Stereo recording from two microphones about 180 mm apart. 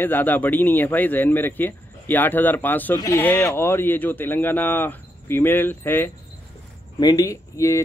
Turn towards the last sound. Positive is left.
turn(degrees=15)  # may be behind; listen again after turning